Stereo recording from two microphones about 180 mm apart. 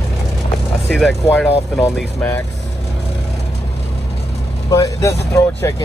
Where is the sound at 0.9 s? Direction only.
Centre (ahead or behind).